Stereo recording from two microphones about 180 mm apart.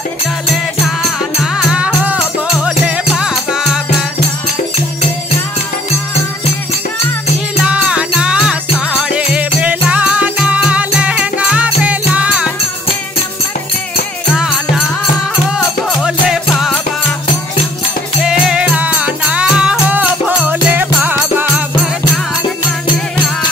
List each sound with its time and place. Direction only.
1.4 s music: 5° right (ahead or behind)
7.6 s music: 5° right (ahead or behind)
15.5 s music: centre (ahead or behind)
18.2 s music: 5° right (ahead or behind)